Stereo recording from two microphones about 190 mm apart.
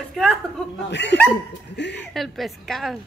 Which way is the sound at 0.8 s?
65° left (ahead or behind).